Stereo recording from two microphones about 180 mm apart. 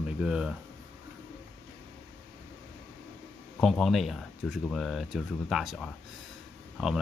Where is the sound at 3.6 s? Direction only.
Centre (ahead or behind).